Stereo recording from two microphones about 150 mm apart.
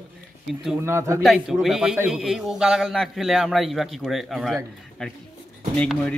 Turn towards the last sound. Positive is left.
turn(degrees=5)  # may be behind; listen again after turning